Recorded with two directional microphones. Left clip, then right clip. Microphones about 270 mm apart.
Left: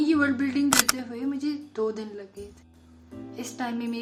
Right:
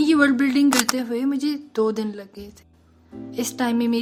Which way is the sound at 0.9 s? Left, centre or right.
Right.